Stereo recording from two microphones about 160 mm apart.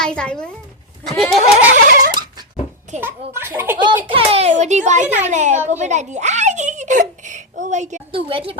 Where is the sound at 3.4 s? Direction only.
15° right (ahead or behind).